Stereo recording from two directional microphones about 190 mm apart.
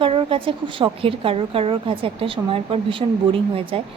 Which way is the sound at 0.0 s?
30° right (ahead or behind).